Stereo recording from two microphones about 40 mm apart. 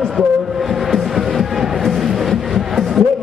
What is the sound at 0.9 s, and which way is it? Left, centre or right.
Music, centre.